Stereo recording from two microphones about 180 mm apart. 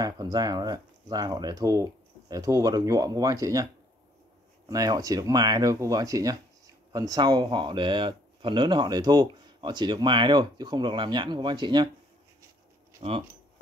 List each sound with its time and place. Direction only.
0.0 s speech: 20° right (ahead or behind)
4.6 s speech: 20° right (ahead or behind)
13.0 s speech: 35° right (ahead or behind)